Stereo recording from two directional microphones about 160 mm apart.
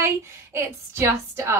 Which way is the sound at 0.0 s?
15° right (ahead or behind).